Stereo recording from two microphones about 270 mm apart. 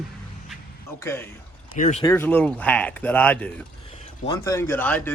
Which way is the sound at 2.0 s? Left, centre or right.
Centre.